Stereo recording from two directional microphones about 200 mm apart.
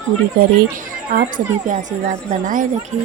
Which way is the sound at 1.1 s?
40° right (ahead or behind).